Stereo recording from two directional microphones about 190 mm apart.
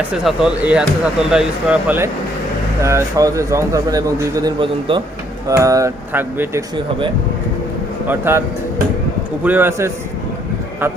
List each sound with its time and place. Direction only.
0.1 s speech: 5° right (ahead or behind)
8.0 s speech: 10° right (ahead or behind)